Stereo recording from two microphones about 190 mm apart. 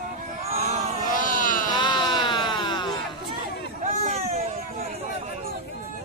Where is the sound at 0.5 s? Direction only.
35° right (ahead or behind).